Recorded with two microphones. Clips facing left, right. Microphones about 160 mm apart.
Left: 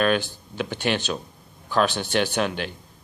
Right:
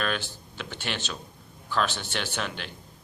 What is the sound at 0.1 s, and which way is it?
Speech, 15° left (ahead or behind).